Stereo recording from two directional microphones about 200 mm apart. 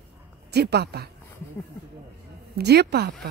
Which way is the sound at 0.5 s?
55° right (ahead or behind).